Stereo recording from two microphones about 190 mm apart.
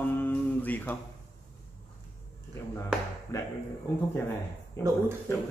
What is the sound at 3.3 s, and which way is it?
Speech, 15° left (ahead or behind).